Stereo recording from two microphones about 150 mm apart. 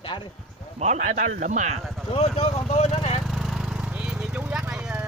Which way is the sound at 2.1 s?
40° left (ahead or behind).